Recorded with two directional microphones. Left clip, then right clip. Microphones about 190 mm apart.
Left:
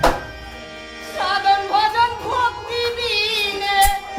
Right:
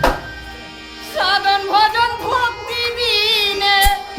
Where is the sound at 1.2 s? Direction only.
45° right (ahead or behind).